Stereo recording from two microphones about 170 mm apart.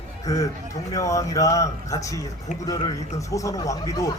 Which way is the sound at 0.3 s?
20° left (ahead or behind).